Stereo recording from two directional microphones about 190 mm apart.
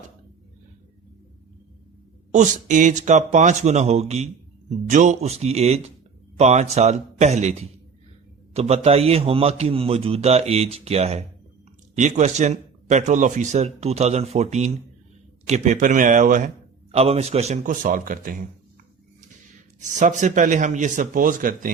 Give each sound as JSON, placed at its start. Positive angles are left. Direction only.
{"t": 2.3, "sound": "a man's voice", "side_deg": -40}
{"t": 16.9, "sound": "a man's voice", "side_deg": -30}
{"t": 19.8, "sound": "a man's voice", "side_deg": -40}